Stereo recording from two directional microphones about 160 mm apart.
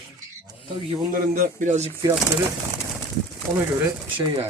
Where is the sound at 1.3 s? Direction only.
55° right (ahead or behind).